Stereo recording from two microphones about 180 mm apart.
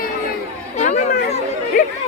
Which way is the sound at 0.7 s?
40° left (ahead or behind).